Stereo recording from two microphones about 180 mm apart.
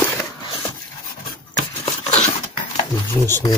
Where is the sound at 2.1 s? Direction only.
35° left (ahead or behind).